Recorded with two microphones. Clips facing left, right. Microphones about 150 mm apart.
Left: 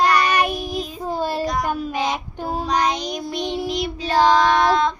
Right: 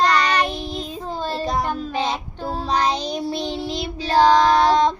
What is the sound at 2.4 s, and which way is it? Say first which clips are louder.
Child singing: left 1 dB; 10° left (ahead or behind).